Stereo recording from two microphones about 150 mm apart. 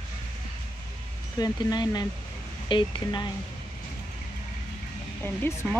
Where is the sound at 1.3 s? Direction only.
25° left (ahead or behind).